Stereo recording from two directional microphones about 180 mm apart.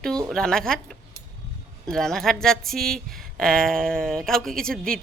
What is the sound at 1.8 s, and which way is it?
A woman's voice, centre (ahead or behind).